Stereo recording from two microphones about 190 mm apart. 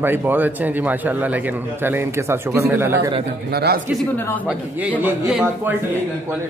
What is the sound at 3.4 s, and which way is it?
Speech, 55° right (ahead or behind).